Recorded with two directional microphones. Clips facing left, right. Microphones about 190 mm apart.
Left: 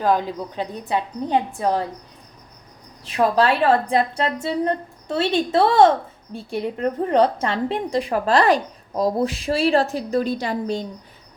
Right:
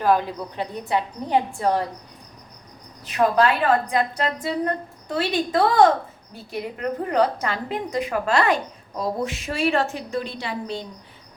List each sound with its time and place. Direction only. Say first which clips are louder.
0.0 s a woman's voice: even; 15° left (ahead or behind)
3.0 s a woman's voice: left 1 dB; 30° left (ahead or behind)